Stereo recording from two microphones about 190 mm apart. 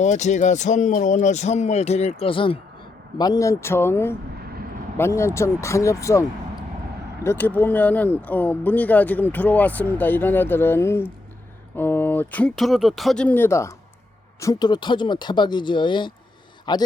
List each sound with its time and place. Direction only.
0.0 s speech: 40° left (ahead or behind); by 6.2 s 15° left (ahead or behind)
7.3 s speech: 10° left (ahead or behind)